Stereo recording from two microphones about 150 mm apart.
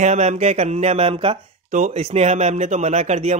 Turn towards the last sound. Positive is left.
turn(degrees=-45)  # may be behind; listen again after turning